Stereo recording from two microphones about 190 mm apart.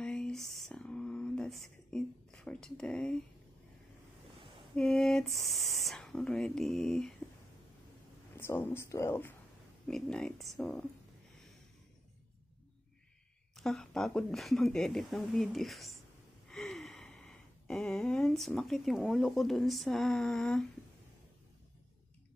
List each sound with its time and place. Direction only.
0.0 s a sound: 5° left (ahead or behind)
4.4 s a sound: 25° right (ahead or behind)
4.7 s speech: 5° left (ahead or behind)
8.4 s speech: 10° left (ahead or behind)
13.6 s speech: centre (ahead or behind)
16.4 s gasp: centre (ahead or behind)